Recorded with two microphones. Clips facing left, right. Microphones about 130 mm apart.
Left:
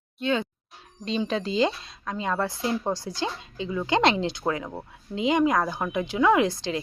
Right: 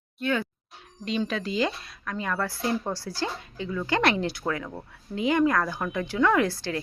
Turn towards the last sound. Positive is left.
turn(degrees=20)  # may be behind; listen again after turning